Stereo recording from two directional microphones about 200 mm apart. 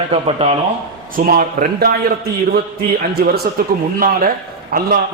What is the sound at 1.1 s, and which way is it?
A man's voice, 45° right (ahead or behind).